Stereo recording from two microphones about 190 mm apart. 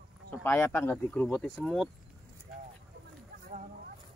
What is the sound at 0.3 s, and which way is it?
Speech, 10° left (ahead or behind).